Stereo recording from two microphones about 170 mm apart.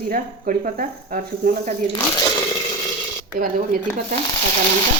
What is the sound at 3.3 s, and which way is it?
Speech, 55° right (ahead or behind).